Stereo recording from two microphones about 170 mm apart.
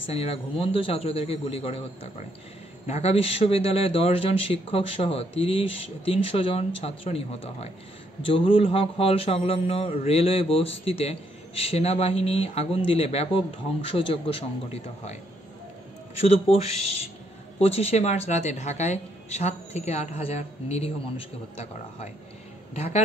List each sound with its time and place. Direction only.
0.1 s speech: 35° left (ahead or behind)
16.3 s speech: 35° left (ahead or behind)